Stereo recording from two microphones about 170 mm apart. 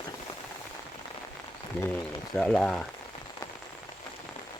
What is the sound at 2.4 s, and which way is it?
Speech, 5° left (ahead or behind).